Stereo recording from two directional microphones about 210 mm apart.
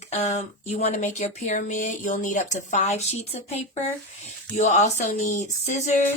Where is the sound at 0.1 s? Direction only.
30° left (ahead or behind).